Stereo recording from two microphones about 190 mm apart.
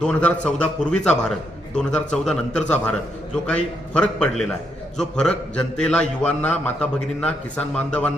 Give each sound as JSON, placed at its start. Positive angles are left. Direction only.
{"t": 0.0, "sound": "a man's voice", "side_deg": 5}